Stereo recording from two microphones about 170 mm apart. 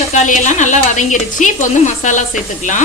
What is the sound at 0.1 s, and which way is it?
A woman's voice, 45° left (ahead or behind).